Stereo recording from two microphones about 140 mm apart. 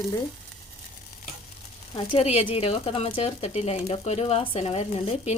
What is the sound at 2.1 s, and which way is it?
Speech, 45° left (ahead or behind).